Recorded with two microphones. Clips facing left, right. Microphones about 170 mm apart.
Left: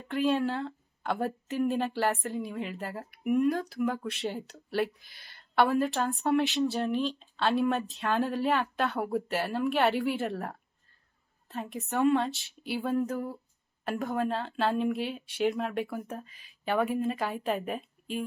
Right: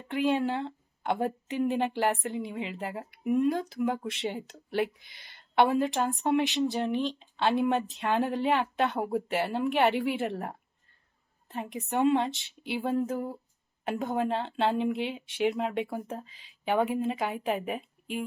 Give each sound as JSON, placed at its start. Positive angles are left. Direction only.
{"t": 0.1, "sound": "a woman's voice", "side_deg": -15}